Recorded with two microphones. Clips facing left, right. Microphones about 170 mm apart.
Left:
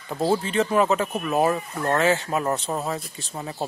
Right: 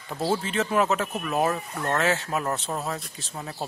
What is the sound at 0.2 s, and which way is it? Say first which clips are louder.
Speech: left 4 dB; centre (ahead or behind).